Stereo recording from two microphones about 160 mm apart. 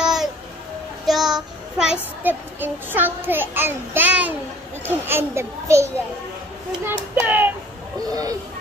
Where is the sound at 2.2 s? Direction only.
10° right (ahead or behind).